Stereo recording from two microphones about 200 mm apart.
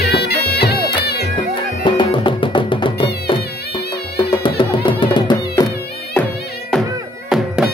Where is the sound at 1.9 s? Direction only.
25° left (ahead or behind).